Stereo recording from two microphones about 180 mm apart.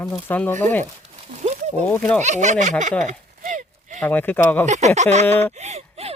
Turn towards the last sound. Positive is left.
turn(degrees=-35)  # may be behind; listen again after turning